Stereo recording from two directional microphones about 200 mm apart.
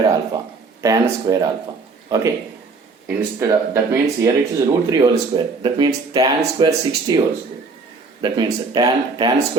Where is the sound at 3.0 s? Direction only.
10° right (ahead or behind).